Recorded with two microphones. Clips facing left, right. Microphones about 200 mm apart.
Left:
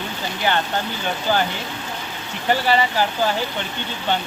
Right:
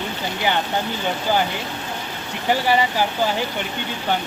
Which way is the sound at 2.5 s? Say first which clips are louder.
Even; 15° right (ahead or behind).